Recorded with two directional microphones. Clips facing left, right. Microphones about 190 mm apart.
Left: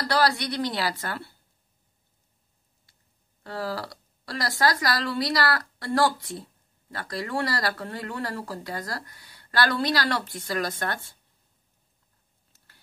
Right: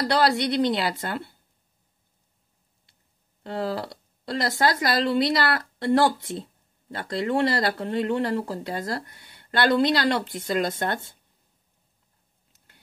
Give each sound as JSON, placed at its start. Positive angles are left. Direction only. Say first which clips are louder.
{"t": 0.0, "sound": "speech", "louder": "right 3 dB", "side_deg": -20}
{"t": 3.4, "sound": "speech", "louder": "right 3 dB", "side_deg": -20}
{"t": 12.5, "sound": "a sound", "louder": "right 2 dB", "side_deg": -20}